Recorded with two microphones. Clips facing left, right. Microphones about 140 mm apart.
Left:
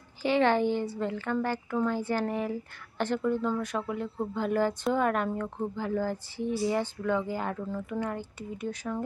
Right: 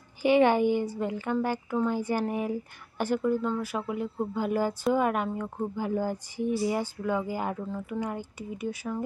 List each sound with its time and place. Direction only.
0.2 s speech: 15° right (ahead or behind)
8.0 s speech: 10° right (ahead or behind)